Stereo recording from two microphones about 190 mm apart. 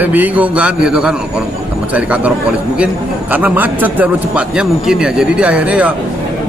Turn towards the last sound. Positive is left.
turn(degrees=-5)  # may be behind; listen again after turning